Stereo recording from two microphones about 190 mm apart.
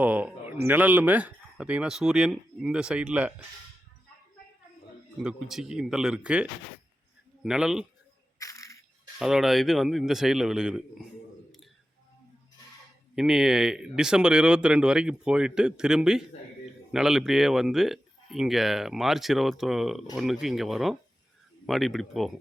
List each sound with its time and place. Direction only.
0.0 s speech: 10° right (ahead or behind)
5.2 s speech: 5° right (ahead or behind)
8.4 s a sound: 15° left (ahead or behind)
9.1 s speech: centre (ahead or behind)
13.1 s speech: 5° right (ahead or behind)